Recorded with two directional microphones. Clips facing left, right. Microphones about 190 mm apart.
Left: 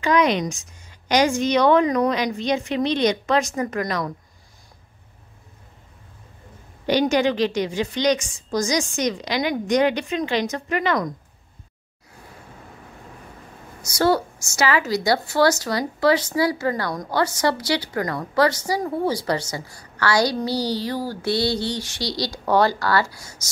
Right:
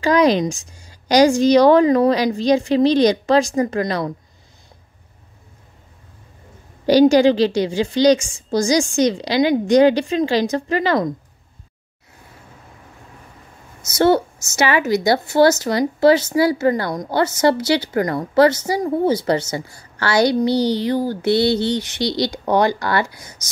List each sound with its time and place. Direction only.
0.0 s a woman's voice: 35° right (ahead or behind)
6.9 s a woman's voice: 35° right (ahead or behind)
13.9 s a woman's voice: 25° right (ahead or behind)